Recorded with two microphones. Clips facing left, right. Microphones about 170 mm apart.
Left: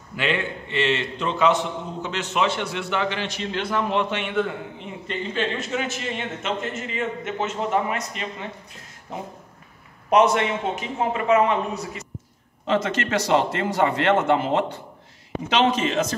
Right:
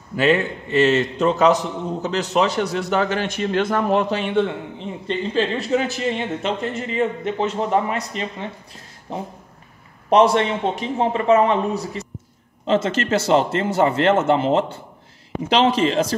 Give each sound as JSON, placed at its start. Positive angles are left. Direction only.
{"t": 0.1, "sound": "a man's voice", "side_deg": -40}
{"t": 10.0, "sound": "a man's voice", "side_deg": -30}